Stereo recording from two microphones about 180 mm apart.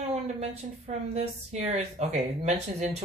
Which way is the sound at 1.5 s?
40° right (ahead or behind).